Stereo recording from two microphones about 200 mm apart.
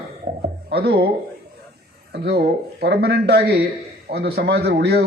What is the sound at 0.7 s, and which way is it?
Speech, 50° right (ahead or behind).